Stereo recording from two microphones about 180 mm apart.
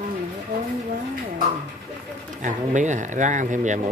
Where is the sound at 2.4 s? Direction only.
45° right (ahead or behind).